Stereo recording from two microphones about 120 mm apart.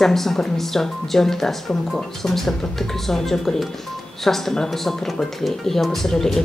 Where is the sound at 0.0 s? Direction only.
Centre (ahead or behind).